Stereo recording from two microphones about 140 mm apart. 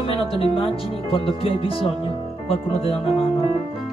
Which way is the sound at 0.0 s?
40° left (ahead or behind).